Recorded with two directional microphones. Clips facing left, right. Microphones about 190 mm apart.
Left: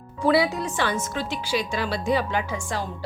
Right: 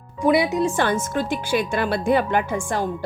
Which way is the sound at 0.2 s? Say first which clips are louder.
Right 3 dB; 20° right (ahead or behind).